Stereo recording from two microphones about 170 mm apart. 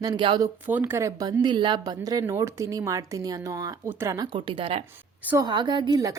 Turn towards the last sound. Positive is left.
turn(degrees=-20)  # may be behind; listen again after turning